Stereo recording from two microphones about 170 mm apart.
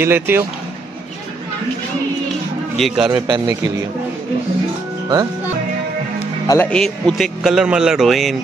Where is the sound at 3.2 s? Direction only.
25° right (ahead or behind).